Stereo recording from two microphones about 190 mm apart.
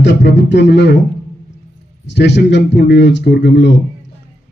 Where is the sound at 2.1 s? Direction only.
65° left (ahead or behind).